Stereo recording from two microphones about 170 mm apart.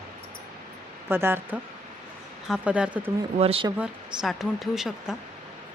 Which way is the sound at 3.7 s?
5° right (ahead or behind).